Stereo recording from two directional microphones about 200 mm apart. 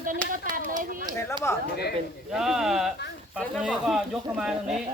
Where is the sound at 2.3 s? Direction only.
Centre (ahead or behind).